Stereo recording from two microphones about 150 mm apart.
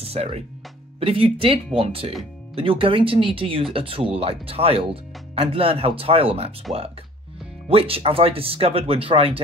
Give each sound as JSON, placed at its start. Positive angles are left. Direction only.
{"t": 0.0, "sound": "speech", "side_deg": -40}
{"t": 7.6, "sound": "speech", "side_deg": -40}